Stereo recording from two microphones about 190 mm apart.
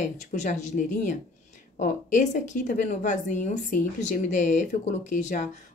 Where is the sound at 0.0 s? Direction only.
40° left (ahead or behind).